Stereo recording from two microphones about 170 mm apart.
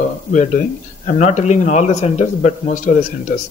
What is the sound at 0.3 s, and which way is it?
A man's voice, 50° left (ahead or behind).